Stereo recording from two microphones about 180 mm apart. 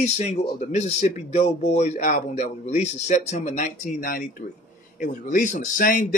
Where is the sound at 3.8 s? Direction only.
55° left (ahead or behind).